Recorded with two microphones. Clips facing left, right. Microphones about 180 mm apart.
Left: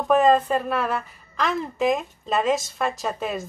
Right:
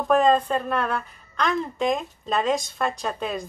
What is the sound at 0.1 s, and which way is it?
A woman's voice, 5° left (ahead or behind).